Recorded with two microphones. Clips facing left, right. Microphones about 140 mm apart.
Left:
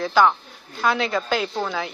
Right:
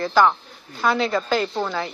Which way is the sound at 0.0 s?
Centre (ahead or behind).